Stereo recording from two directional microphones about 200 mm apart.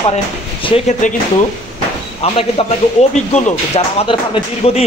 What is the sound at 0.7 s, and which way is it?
Speech, 35° left (ahead or behind).